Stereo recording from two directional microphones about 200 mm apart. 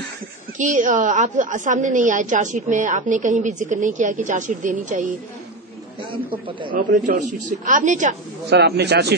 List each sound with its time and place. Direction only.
0.6 s a woman's voice: 40° right (ahead or behind)
6.7 s a woman's voice: 40° right (ahead or behind)
8.5 s speech: 55° right (ahead or behind)